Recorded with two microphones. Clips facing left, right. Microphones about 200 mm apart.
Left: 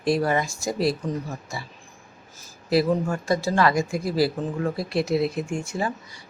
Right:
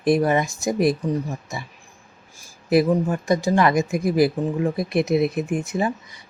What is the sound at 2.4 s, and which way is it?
Speech, 20° right (ahead or behind).